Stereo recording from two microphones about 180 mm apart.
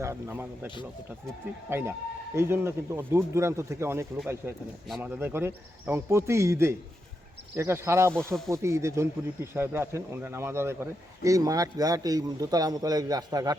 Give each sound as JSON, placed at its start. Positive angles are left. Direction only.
{"t": 0.0, "sound": "a man's voice", "side_deg": -15}
{"t": 1.7, "sound": "a man's voice", "side_deg": -10}